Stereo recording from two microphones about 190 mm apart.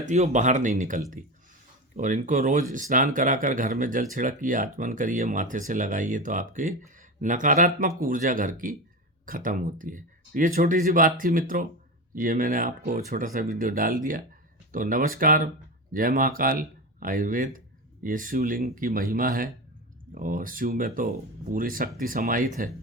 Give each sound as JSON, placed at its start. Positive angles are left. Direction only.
{"t": 0.0, "sound": "speech", "side_deg": -40}